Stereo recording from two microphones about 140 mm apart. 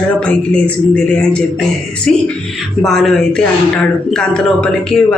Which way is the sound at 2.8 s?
Centre (ahead or behind).